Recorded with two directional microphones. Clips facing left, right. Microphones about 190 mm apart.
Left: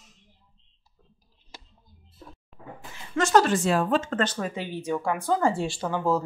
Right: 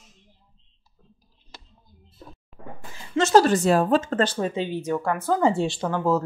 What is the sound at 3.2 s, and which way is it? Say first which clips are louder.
Speech: right 3 dB; 25° right (ahead or behind).